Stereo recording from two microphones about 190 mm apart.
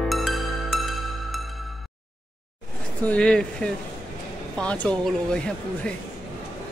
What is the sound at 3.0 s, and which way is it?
Speech, 5° left (ahead or behind).